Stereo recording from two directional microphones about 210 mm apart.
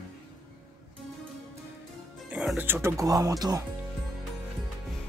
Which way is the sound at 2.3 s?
5° right (ahead or behind).